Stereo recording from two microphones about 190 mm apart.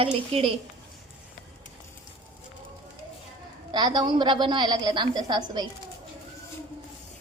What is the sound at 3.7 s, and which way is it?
A woman's voice, 20° right (ahead or behind).